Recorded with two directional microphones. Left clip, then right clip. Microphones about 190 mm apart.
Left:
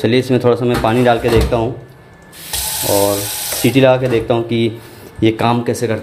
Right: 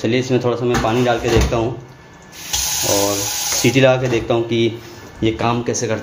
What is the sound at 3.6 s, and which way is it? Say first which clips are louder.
Speech: left 3 dB; 20° left (ahead or behind).